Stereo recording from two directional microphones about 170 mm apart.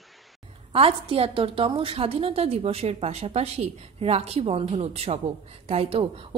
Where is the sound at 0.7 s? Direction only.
35° right (ahead or behind).